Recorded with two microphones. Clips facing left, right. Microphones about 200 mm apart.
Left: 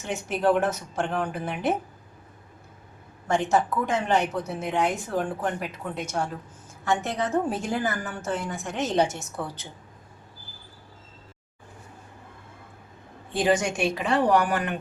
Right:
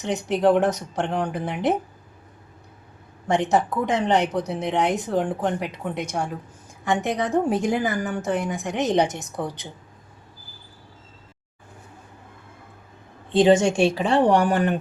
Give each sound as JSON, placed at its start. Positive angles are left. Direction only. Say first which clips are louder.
{"t": 0.0, "sound": "a woman's voice", "louder": "right 5 dB", "side_deg": -15}
{"t": 3.2, "sound": "a woman's voice", "louder": "right 2 dB", "side_deg": -20}
{"t": 13.3, "sound": "a woman's voice", "louder": "right 7 dB", "side_deg": -25}